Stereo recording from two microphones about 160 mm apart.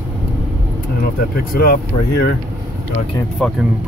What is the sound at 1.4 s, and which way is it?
Speech, 65° left (ahead or behind).